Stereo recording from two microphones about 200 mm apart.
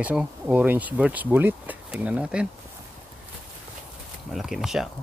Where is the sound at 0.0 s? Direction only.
5° right (ahead or behind).